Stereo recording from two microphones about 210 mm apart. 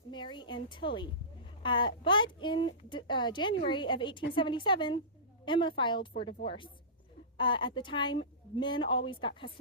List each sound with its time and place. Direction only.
0.1 s a woman's voice: 20° left (ahead or behind)